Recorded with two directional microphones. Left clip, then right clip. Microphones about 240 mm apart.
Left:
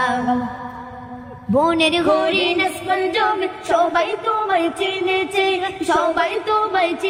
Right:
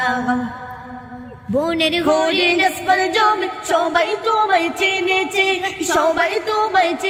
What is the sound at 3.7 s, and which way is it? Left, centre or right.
Music, centre.